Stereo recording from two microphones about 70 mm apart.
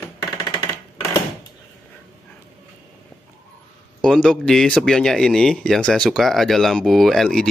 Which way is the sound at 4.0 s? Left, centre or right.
Centre.